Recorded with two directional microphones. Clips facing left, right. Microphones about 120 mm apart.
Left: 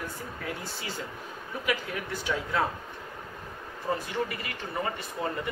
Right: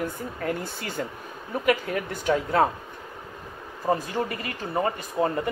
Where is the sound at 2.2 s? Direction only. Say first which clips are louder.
Right 8 dB; 50° right (ahead or behind).